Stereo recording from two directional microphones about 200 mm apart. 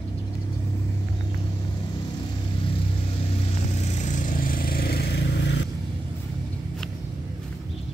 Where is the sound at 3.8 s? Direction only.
35° left (ahead or behind); by 5.7 s 60° left (ahead or behind).